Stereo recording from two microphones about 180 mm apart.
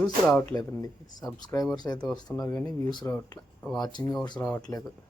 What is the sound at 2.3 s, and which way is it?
Speech, 15° left (ahead or behind).